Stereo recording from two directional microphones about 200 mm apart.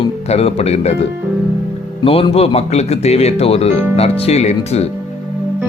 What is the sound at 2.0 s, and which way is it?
Speech, 30° left (ahead or behind).